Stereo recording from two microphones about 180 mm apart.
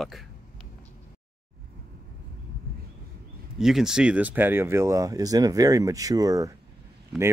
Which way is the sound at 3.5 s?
Centre (ahead or behind).